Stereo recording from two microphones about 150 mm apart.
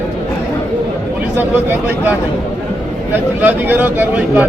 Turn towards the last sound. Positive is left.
turn(degrees=-10)  # may be behind; listen again after turning